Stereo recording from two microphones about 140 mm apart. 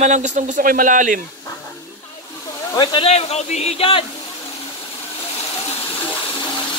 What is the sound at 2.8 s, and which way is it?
Speech, 30° left (ahead or behind).